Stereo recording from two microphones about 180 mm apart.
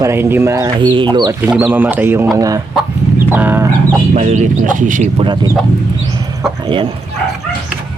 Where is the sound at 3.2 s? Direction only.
10° right (ahead or behind).